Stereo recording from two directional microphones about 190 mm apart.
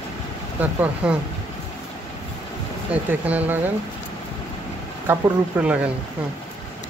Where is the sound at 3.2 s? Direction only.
10° right (ahead or behind).